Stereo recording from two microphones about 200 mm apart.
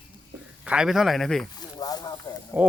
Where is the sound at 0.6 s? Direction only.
5° right (ahead or behind).